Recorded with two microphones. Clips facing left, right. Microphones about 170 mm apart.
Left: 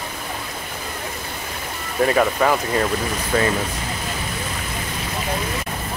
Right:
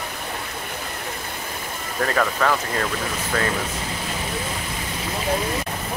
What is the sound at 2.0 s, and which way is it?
Speech, 15° left (ahead or behind).